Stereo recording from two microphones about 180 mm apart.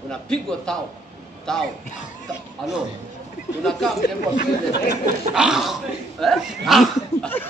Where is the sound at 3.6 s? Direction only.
Centre (ahead or behind).